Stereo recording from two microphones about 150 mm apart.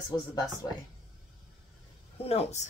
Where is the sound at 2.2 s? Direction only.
40° left (ahead or behind).